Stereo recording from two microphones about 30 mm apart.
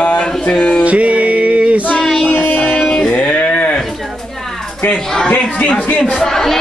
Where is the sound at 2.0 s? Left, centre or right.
Centre.